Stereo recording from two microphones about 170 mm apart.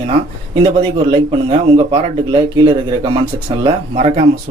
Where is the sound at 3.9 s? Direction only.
40° right (ahead or behind).